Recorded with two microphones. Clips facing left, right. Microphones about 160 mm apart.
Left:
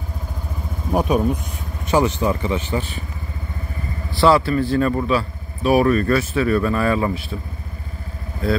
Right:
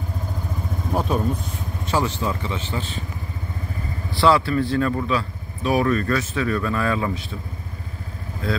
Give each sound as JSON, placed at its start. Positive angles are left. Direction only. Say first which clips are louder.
{"t": 0.9, "sound": "speech", "louder": "left 5 dB", "side_deg": 15}
{"t": 4.1, "sound": "speech", "louder": "left 3 dB", "side_deg": 5}